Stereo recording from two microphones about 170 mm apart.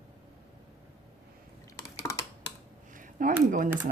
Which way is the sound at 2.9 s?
50° right (ahead or behind).